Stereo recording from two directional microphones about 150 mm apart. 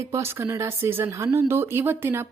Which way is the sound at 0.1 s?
15° right (ahead or behind).